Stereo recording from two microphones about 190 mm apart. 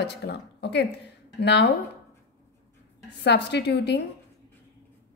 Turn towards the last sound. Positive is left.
turn(degrees=60)  # may be behind; listen again after turning